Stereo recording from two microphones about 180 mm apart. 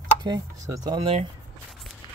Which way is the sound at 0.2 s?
25° right (ahead or behind).